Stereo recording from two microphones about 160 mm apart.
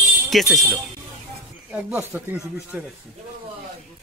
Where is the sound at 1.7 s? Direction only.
10° right (ahead or behind).